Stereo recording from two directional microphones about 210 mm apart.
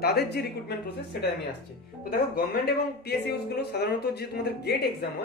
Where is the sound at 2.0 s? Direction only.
45° left (ahead or behind).